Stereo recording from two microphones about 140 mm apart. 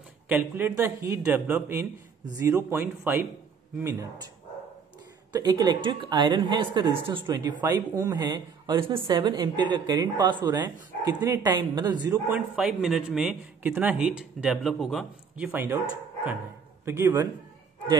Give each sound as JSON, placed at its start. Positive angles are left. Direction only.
{"t": 0.3, "sound": "a man's voice", "side_deg": -15}
{"t": 5.3, "sound": "a woman's voice", "side_deg": -30}
{"t": 7.6, "sound": "speech", "side_deg": -20}
{"t": 8.3, "sound": "a woman's voice", "side_deg": -35}
{"t": 12.4, "sound": "speech", "side_deg": -5}
{"t": 13.6, "sound": "a man's voice", "side_deg": -15}
{"t": 16.8, "sound": "speech", "side_deg": -20}